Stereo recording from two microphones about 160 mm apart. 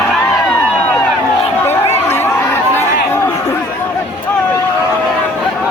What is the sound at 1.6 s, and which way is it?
Chatter, 15° left (ahead or behind).